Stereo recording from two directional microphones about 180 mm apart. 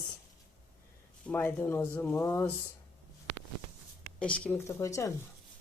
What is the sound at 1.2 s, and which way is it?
Speech, 10° left (ahead or behind).